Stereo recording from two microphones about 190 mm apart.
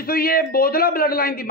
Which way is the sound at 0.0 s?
50° left (ahead or behind).